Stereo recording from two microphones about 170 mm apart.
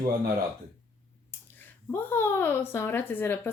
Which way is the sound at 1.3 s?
10° left (ahead or behind).